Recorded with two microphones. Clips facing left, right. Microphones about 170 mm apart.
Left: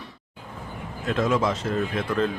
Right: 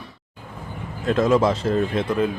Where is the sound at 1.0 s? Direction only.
35° right (ahead or behind).